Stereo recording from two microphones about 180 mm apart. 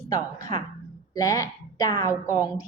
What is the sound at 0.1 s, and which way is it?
A woman's voice, 20° left (ahead or behind).